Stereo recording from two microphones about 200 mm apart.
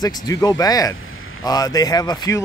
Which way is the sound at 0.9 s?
90° left.